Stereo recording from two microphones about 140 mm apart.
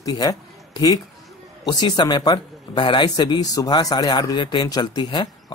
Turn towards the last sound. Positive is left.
turn(degrees=30)  # may be behind; listen again after turning